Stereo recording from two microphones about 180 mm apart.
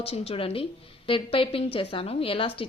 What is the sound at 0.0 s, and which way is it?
A woman's voice, 35° left (ahead or behind).